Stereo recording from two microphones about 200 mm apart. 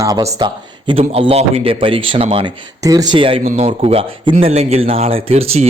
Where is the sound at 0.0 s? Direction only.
15° right (ahead or behind).